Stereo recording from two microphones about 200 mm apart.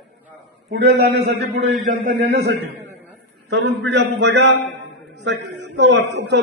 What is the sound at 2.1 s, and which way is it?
A man's voice, 55° right (ahead or behind).